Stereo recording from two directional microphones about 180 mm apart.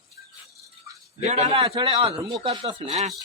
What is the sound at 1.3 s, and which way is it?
A man's voice, 40° right (ahead or behind).